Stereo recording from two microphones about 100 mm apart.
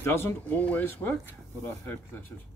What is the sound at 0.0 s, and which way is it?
Speech, 20° left (ahead or behind).